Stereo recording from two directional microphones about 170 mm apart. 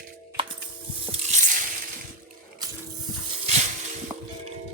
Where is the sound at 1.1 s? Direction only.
40° right (ahead or behind).